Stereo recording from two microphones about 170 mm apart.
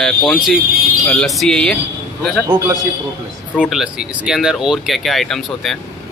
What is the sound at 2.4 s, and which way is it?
Speech, 20° right (ahead or behind).